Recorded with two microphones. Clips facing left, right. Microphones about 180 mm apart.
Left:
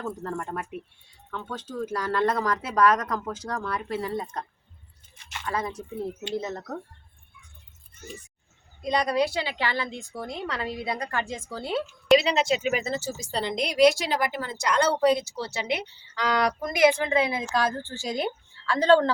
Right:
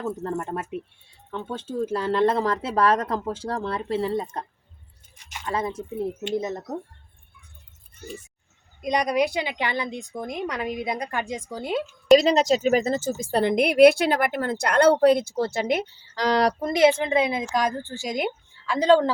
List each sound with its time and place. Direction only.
0.2 s speech: 20° right (ahead or behind)
5.5 s speech: 25° right (ahead or behind)
8.8 s speech: 15° right (ahead or behind)
12.1 s a woman's voice: 40° right (ahead or behind); by 19.1 s 10° right (ahead or behind)